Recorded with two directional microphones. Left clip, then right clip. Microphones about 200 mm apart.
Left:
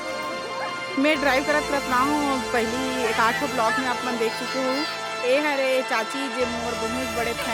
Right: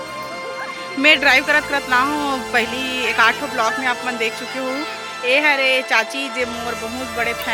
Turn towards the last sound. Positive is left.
turn(degrees=5)  # may be behind; listen again after turning